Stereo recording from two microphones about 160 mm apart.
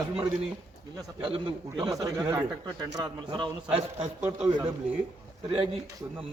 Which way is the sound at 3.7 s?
40° right (ahead or behind).